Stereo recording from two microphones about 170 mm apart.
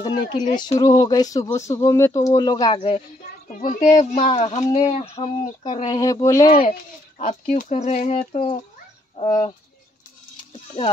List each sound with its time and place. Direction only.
0.0 s speech: 25° left (ahead or behind)
3.6 s speech: 45° left (ahead or behind)
4.6 s speech: 20° left (ahead or behind)
4.9 s speech: 35° left (ahead or behind)
5.9 s speech: 20° left (ahead or behind)
7.2 s speech: 45° left (ahead or behind)
9.1 s bird: 30° left (ahead or behind)